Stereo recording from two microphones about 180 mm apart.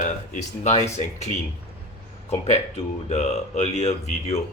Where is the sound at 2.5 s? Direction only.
35° left (ahead or behind).